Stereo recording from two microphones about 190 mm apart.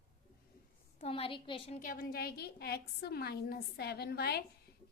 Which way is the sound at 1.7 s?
45° left (ahead or behind).